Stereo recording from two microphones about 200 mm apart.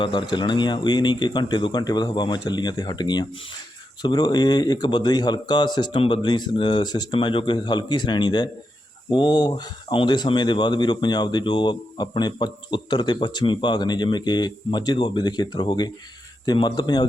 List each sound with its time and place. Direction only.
0.0 s speech: 25° left (ahead or behind)